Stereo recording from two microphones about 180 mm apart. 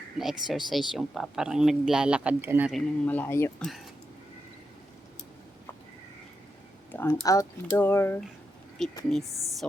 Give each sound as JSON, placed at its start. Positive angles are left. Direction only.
{"t": 0.2, "sound": "speech", "side_deg": 0}
{"t": 2.7, "sound": "speech", "side_deg": 10}
{"t": 6.9, "sound": "speech", "side_deg": 15}
{"t": 9.3, "sound": "a woman's voice", "side_deg": -20}